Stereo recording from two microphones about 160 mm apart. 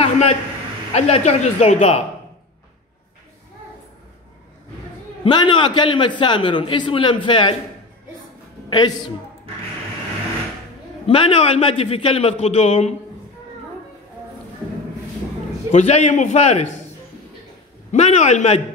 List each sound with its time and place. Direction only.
0.0 s a sound: 40° left (ahead or behind)
0.9 s a man's voice: 40° left (ahead or behind)
5.2 s a man's voice: 30° left (ahead or behind)
8.6 s a man's voice: 25° left (ahead or behind)
11.1 s a man's voice: 35° left (ahead or behind)
15.7 s a man's voice: 45° left (ahead or behind)
17.9 s a man's voice: 45° left (ahead or behind)